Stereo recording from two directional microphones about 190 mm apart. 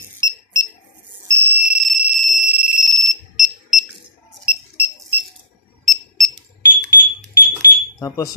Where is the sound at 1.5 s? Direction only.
10° right (ahead or behind).